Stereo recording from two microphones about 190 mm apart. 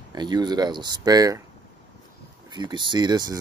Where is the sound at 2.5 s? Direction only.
25° right (ahead or behind).